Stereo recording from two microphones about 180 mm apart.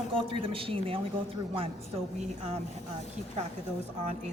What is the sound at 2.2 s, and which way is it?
Speech, 40° right (ahead or behind).